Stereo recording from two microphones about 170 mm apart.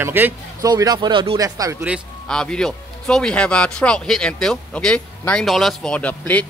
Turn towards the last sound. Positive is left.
turn(degrees=10)  # may be behind; listen again after turning